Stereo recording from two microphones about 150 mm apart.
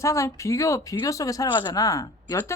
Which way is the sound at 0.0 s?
20° left (ahead or behind).